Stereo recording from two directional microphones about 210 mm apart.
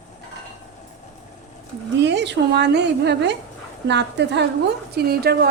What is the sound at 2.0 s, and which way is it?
A woman's voice, 55° right (ahead or behind).